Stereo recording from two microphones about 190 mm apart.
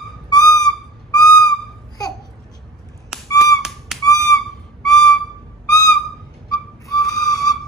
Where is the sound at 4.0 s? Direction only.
15° left (ahead or behind).